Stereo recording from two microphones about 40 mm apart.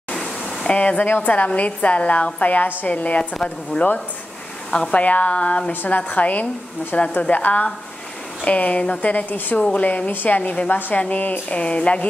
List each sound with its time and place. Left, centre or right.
0.7 s a woman's voice: left
1.0 s a woman's voice: left
2.5 s a woman's voice: left
5.7 s a woman's voice: left
9.6 s a woman's voice: left
11.5 s a woman's voice: left